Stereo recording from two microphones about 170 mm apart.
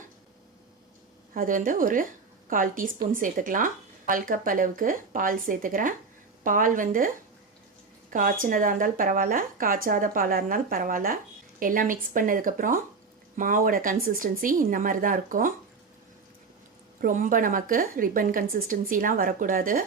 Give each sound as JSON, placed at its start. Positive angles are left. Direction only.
{"t": 1.3, "sound": "a woman's voice", "side_deg": -55}
{"t": 8.1, "sound": "a woman's voice", "side_deg": -55}
{"t": 17.0, "sound": "a woman's voice", "side_deg": -50}